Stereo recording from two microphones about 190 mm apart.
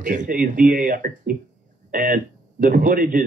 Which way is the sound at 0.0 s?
40° right (ahead or behind).